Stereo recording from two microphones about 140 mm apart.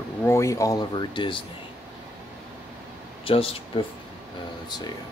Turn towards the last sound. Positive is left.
turn(degrees=30)  # may be behind; listen again after turning